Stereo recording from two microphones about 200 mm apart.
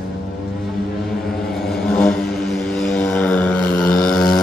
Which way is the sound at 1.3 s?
Centre (ahead or behind).